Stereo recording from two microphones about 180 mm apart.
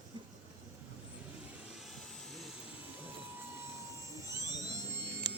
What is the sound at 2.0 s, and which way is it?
Vehicle, centre (ahead or behind).